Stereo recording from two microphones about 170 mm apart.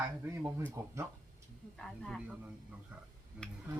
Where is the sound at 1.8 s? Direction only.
5° left (ahead or behind).